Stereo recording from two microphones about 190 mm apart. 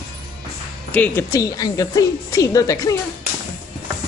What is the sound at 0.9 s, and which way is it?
A woman's voice, 5° left (ahead or behind).